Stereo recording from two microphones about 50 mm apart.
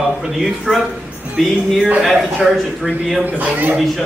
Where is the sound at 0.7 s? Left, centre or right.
Centre.